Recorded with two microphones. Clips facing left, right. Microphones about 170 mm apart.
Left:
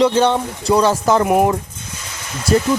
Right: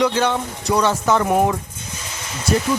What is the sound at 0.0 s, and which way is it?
Speech, 30° left (ahead or behind).